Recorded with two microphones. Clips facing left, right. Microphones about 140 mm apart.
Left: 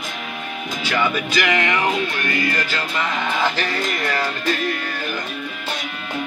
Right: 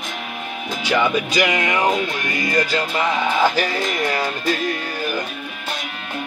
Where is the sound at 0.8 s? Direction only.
15° right (ahead or behind).